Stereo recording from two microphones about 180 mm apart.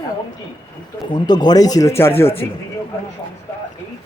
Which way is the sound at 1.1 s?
25° left (ahead or behind).